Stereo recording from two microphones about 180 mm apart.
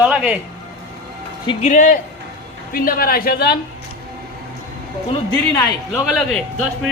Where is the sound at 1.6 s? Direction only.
45° left (ahead or behind).